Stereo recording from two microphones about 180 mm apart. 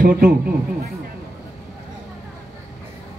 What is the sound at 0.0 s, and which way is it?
Speech, 50° right (ahead or behind).